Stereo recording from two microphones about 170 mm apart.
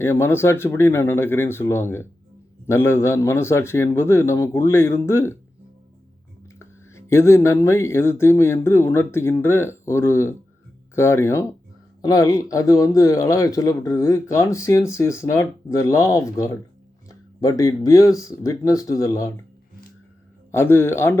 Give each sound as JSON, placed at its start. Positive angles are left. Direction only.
{"t": 0.0, "sound": "speech", "side_deg": 15}
{"t": 6.6, "sound": "speech", "side_deg": 15}
{"t": 20.5, "sound": "speech", "side_deg": 15}